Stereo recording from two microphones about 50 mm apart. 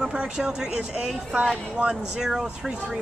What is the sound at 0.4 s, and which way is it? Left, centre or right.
Speech, centre.